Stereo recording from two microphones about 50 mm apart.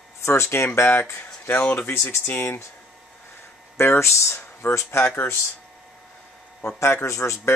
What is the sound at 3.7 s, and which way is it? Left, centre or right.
Speech, left.